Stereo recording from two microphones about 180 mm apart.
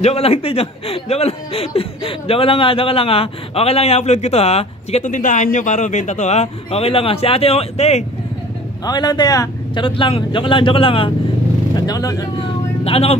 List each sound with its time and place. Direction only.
0.0 s speech: 35° left (ahead or behind)
8.8 s speech: 25° left (ahead or behind)
12.8 s speech: 35° left (ahead or behind)